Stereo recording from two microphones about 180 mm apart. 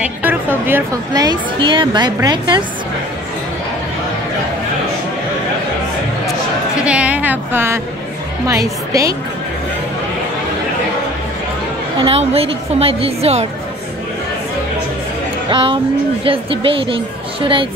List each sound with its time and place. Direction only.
0.0 s speech: 10° right (ahead or behind)
6.8 s a sound: 5° right (ahead or behind)
8.5 s a woman's voice: 20° right (ahead or behind)
12.0 s a woman's voice: 30° right (ahead or behind)
15.5 s speech: 25° right (ahead or behind)